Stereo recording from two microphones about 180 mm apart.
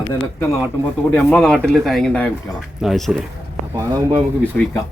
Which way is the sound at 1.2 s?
10° left (ahead or behind).